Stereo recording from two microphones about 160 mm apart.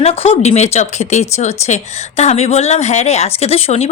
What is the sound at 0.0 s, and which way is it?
A woman's voice, 40° left (ahead or behind).